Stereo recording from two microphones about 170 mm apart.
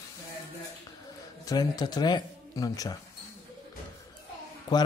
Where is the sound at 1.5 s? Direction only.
25° left (ahead or behind).